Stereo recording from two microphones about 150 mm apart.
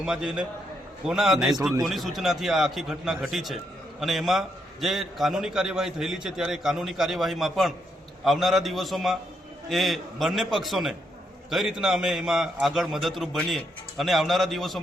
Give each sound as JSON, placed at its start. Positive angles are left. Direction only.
{"t": 0.0, "sound": "a man's voice", "side_deg": -5}